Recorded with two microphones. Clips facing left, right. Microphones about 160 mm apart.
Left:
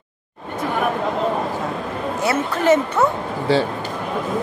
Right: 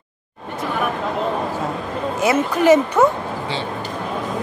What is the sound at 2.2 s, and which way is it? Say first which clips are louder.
Speech: right 3 dB; 15° right (ahead or behind).